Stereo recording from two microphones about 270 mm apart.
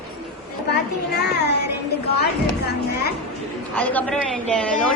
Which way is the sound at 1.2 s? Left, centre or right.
Left.